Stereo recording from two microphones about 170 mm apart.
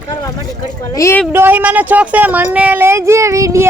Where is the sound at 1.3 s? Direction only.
10° right (ahead or behind).